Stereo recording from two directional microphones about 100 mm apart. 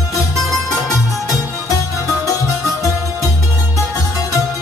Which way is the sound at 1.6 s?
35° left (ahead or behind).